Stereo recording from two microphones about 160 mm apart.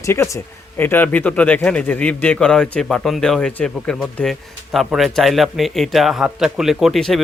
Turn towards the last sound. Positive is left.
turn(degrees=0)  # may be behind; listen again after turning